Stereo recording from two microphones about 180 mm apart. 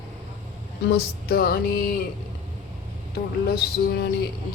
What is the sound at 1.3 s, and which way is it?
Music, 55° left (ahead or behind).